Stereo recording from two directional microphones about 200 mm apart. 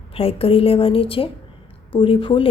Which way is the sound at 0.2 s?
30° left (ahead or behind).